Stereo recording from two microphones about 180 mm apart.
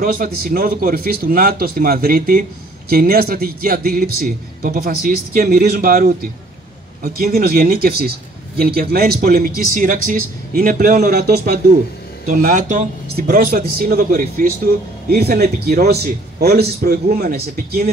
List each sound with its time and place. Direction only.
0.0 s a man's voice: 55° right (ahead or behind)